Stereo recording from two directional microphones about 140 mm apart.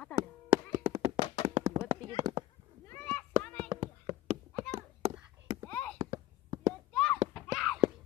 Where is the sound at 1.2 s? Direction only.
35° left (ahead or behind).